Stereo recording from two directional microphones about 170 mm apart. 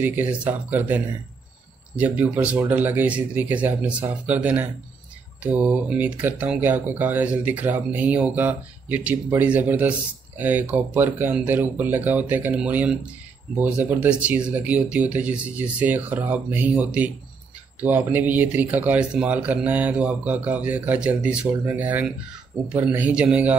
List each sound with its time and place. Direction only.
0.0 s speech: 10° right (ahead or behind)